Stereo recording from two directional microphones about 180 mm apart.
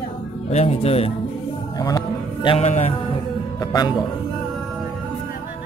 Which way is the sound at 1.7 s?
20° left (ahead or behind).